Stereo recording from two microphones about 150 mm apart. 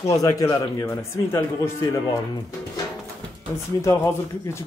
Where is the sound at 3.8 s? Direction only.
20° left (ahead or behind).